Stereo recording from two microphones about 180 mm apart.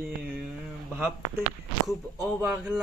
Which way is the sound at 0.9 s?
15° right (ahead or behind).